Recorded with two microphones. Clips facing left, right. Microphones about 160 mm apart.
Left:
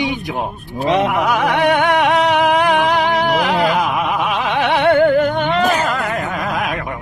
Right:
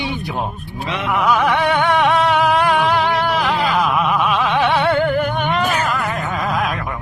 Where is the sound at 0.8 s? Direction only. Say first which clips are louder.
Left 5 dB; 40° left (ahead or behind).